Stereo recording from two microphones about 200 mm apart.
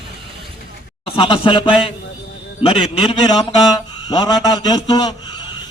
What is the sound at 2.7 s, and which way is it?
A man's voice, 25° left (ahead or behind).